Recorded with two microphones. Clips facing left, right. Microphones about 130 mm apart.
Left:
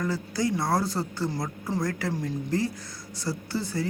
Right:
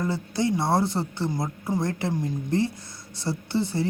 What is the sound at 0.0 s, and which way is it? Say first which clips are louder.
Speech: right 2 dB; 25° right (ahead or behind).